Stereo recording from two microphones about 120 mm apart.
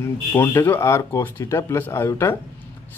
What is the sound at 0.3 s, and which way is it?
Speech, 20° left (ahead or behind).